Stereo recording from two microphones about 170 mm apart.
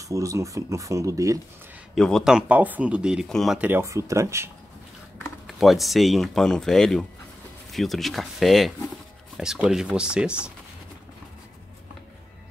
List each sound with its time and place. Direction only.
0.0 s speech: 20° right (ahead or behind)
2.0 s speech: 5° left (ahead or behind); by 4.5 s 15° right (ahead or behind)
5.5 s speech: centre (ahead or behind)